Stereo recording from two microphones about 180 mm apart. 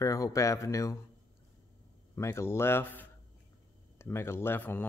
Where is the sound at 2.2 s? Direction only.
15° left (ahead or behind).